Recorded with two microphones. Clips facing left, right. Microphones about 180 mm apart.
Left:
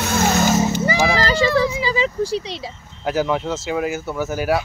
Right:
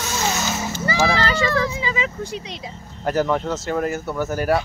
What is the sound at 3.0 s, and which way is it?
Speech, 5° left (ahead or behind).